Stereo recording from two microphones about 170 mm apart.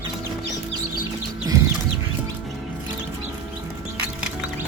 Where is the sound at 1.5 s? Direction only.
20° right (ahead or behind).